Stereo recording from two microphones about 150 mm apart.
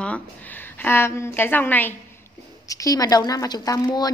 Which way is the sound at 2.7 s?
25° left (ahead or behind).